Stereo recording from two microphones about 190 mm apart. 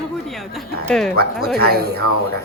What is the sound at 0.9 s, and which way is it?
Speech, 5° left (ahead or behind).